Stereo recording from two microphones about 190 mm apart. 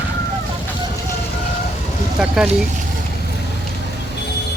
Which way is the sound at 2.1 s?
5° right (ahead or behind).